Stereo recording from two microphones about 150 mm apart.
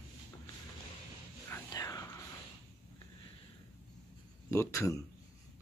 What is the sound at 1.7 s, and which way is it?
Whispering, 25° left (ahead or behind).